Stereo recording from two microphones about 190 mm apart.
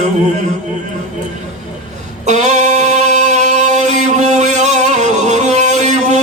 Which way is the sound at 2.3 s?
35° right (ahead or behind).